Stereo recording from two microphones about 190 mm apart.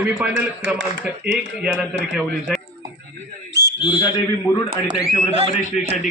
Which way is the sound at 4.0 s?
15° left (ahead or behind).